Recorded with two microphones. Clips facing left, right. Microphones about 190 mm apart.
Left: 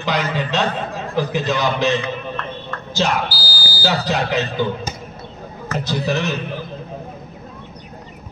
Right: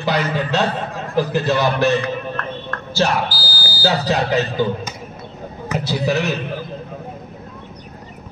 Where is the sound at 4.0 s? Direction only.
10° right (ahead or behind).